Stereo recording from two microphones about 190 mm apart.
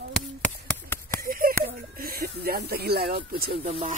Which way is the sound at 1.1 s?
50° right (ahead or behind).